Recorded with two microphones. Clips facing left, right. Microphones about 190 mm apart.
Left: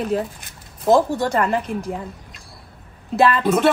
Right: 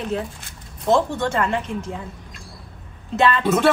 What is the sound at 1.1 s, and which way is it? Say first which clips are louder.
Speech: left 2 dB; 35° left (ahead or behind).